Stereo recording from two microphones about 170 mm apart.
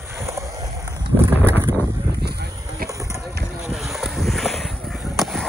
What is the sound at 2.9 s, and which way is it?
Run, 20° right (ahead or behind).